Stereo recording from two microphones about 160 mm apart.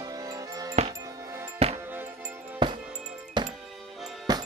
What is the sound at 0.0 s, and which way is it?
Music, 25° right (ahead or behind).